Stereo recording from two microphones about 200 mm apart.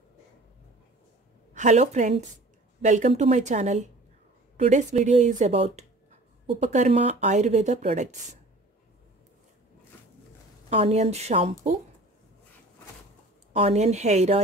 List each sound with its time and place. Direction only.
1.5 s a woman's voice: 35° right (ahead or behind)
10.7 s speech: 30° right (ahead or behind)
13.5 s speech: 30° right (ahead or behind)